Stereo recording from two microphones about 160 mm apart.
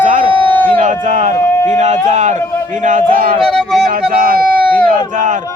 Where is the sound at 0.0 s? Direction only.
50° right (ahead or behind).